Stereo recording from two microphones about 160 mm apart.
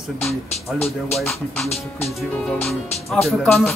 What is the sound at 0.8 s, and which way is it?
Speech, centre (ahead or behind).